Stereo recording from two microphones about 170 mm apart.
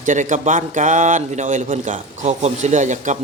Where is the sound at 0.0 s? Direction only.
45° right (ahead or behind).